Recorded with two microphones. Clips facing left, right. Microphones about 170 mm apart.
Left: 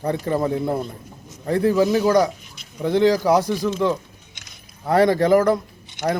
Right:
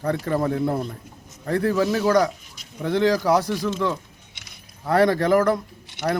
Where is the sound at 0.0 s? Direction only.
20° left (ahead or behind).